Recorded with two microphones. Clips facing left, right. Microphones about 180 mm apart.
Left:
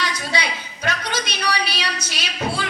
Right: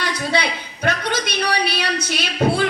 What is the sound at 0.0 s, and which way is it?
A woman's voice, 55° right (ahead or behind).